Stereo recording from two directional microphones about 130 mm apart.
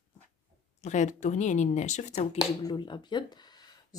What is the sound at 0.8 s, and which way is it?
A woman's voice, 65° left (ahead or behind).